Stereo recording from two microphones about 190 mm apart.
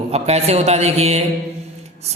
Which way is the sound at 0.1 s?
35° right (ahead or behind).